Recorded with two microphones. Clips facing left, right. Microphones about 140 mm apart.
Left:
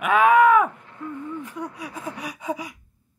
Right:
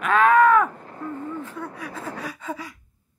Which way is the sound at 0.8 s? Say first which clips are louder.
Right 2 dB; 40° right (ahead or behind).